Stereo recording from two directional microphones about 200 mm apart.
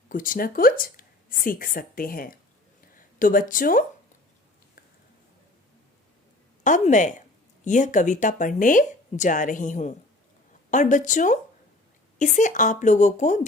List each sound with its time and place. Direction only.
0.1 s a woman's voice: 45° left (ahead or behind)
6.7 s a sound: 40° left (ahead or behind)
7.6 s speech: 40° left (ahead or behind)